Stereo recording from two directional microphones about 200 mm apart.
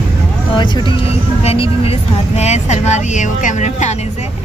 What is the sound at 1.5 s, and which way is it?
A woman's voice, 30° left (ahead or behind).